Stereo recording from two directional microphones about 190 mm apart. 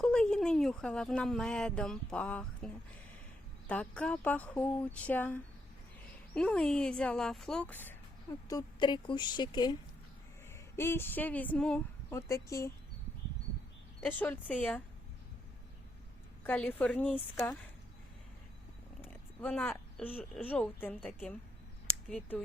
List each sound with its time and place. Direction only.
0.0 s speech: 5° left (ahead or behind)
8.4 s speech: 20° left (ahead or behind)
10.5 s a woman's voice: 10° left (ahead or behind)
14.0 s speech: 10° left (ahead or behind)
16.4 s speech: 10° left (ahead or behind)
19.0 s speech: 5° left (ahead or behind)